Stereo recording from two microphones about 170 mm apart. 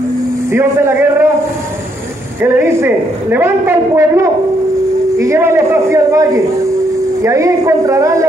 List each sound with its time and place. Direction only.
0.5 s a man's voice: 15° right (ahead or behind)
2.4 s a man's voice: 15° right (ahead or behind)